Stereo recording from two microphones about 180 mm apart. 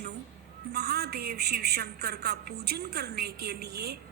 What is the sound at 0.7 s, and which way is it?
A woman's voice, 65° right (ahead or behind).